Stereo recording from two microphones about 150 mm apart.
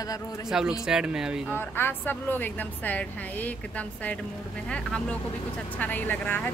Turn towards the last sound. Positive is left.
turn(degrees=10)  # may be behind; listen again after turning